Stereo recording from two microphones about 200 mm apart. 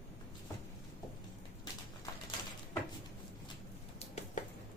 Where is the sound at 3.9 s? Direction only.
35° left (ahead or behind).